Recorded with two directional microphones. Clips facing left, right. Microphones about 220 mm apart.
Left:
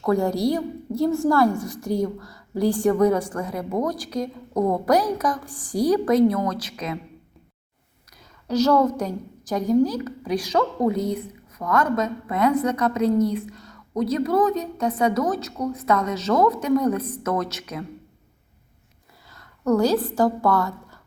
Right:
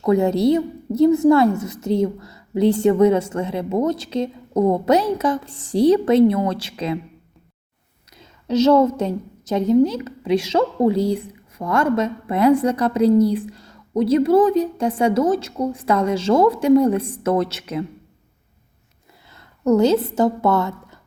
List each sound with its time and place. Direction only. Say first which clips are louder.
0.0 s a woman's voice: right 4 dB; 20° right (ahead or behind)
8.2 s a woman's voice: right 4 dB; 25° right (ahead or behind)
19.3 s a woman's voice: right 4 dB; 25° right (ahead or behind)